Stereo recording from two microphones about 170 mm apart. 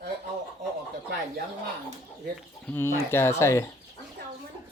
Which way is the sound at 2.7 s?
15° left (ahead or behind).